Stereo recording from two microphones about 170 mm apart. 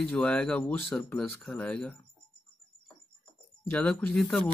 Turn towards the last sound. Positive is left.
turn(degrees=0)  # may be behind; listen again after turning